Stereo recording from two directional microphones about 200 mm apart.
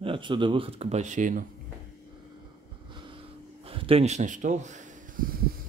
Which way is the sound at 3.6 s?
30° right (ahead or behind).